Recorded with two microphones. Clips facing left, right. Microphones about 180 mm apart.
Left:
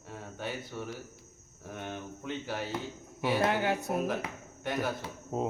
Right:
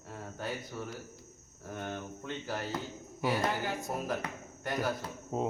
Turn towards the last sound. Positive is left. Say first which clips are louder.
# left 1 dB
turn(degrees=0)  # may be behind; listen again after turning